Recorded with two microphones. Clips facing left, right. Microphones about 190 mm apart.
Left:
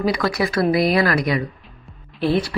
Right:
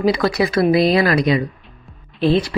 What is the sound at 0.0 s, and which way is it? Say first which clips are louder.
Speech: right 4 dB; 25° right (ahead or behind).